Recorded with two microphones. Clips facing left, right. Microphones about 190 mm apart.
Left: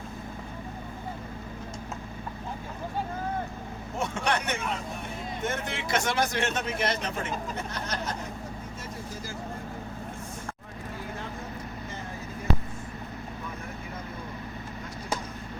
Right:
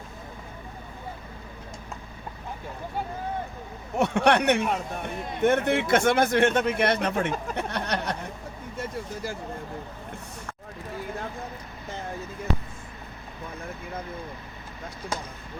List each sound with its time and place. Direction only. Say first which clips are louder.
3.9 s speech: right 8 dB; 65° right (ahead or behind)